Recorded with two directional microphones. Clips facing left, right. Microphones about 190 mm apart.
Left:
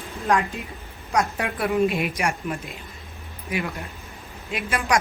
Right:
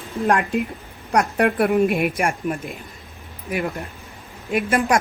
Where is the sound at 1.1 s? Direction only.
60° right (ahead or behind).